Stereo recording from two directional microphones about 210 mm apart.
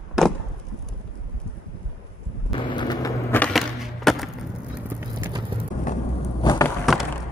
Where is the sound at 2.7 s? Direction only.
20° left (ahead or behind).